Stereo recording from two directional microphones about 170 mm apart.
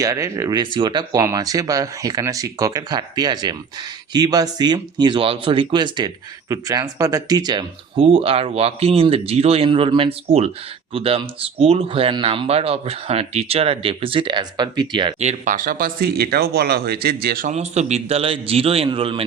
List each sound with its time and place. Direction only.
0.0 s speech: 20° right (ahead or behind)
15.2 s speech: 45° right (ahead or behind)
17.5 s speech: 40° right (ahead or behind)